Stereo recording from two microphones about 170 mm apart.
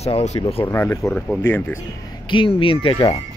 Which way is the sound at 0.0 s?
40° left (ahead or behind).